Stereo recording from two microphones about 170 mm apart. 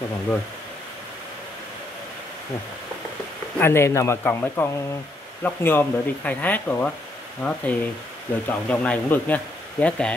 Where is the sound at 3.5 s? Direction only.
15° left (ahead or behind).